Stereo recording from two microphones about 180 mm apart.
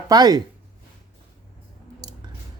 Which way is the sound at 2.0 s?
20° right (ahead or behind).